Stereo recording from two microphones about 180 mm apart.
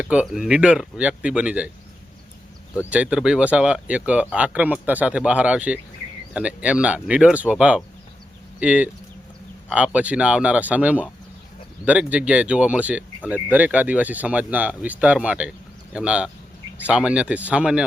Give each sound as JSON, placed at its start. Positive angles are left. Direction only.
{"t": 0.0, "sound": "speech", "side_deg": -5}
{"t": 2.9, "sound": "speech", "side_deg": -5}